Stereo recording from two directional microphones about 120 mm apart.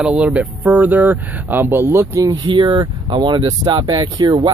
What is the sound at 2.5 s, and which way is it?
Speech, 40° right (ahead or behind).